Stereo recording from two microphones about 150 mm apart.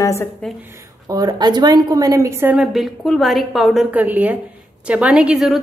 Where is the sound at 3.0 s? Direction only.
Centre (ahead or behind).